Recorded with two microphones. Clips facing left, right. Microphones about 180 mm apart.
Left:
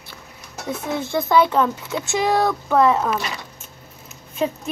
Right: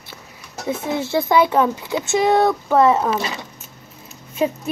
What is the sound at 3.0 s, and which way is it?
Speech, 25° right (ahead or behind).